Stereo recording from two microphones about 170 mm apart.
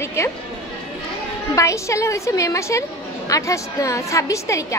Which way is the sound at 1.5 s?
15° left (ahead or behind).